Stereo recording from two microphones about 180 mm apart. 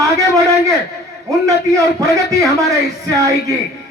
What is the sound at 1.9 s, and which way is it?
Speech, 20° right (ahead or behind).